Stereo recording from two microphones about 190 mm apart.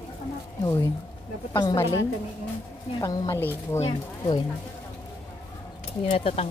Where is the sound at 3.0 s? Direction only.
15° left (ahead or behind).